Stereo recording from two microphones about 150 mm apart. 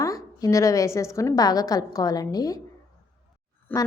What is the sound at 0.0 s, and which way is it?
A woman's voice, 25° left (ahead or behind).